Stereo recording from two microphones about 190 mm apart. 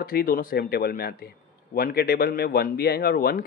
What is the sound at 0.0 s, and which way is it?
Speech, 50° left (ahead or behind).